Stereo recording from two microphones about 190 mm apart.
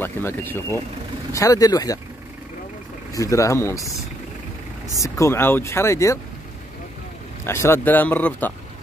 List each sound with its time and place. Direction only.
0.0 s speech: 10° left (ahead or behind)
3.1 s speech: 15° left (ahead or behind)
5.0 s speech: 15° left (ahead or behind)
7.4 s speech: 15° left (ahead or behind)